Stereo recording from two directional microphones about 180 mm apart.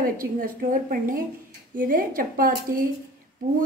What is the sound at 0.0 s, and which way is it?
A woman's voice, 50° right (ahead or behind).